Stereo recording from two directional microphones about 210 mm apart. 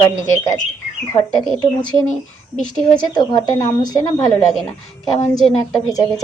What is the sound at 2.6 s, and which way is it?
Speech, 5° left (ahead or behind).